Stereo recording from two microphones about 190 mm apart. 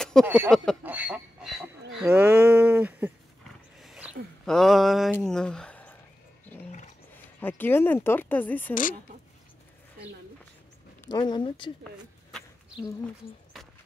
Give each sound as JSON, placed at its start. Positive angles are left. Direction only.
{"t": 0.0, "sound": "a sound", "side_deg": 5}
{"t": 0.5, "sound": "speech", "side_deg": 0}
{"t": 0.8, "sound": "a sound", "side_deg": -10}
{"t": 5.1, "sound": "speech", "side_deg": 5}
{"t": 7.3, "sound": "speech", "side_deg": 10}
{"t": 11.1, "sound": "speech", "side_deg": 20}
{"t": 12.8, "sound": "speech", "side_deg": 5}